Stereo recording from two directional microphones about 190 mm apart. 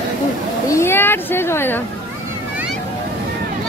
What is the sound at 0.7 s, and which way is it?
A child's voice, 15° left (ahead or behind).